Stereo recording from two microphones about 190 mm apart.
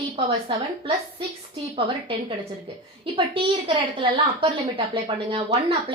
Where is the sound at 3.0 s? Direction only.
25° right (ahead or behind).